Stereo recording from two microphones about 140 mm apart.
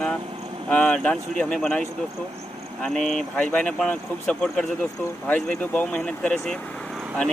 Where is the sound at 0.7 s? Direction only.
5° left (ahead or behind).